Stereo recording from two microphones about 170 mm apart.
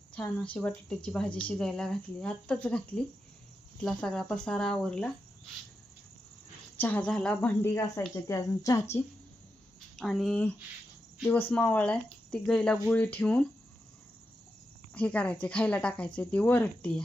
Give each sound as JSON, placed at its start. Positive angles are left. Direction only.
{"t": 0.1, "sound": "speech", "side_deg": 5}
{"t": 6.7, "sound": "speech", "side_deg": 10}
{"t": 10.0, "sound": "speech", "side_deg": 0}
{"t": 14.9, "sound": "speech", "side_deg": 5}